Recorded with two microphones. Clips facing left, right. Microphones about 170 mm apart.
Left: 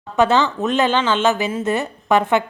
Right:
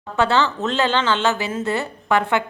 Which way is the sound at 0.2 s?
15° left (ahead or behind).